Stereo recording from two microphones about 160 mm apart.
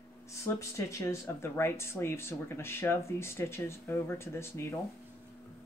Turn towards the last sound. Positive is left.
turn(degrees=15)  # may be behind; listen again after turning